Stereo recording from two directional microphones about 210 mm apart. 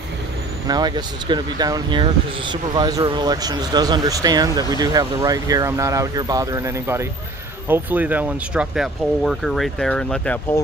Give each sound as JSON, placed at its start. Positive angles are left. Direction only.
{"t": 0.7, "sound": "speech", "side_deg": -20}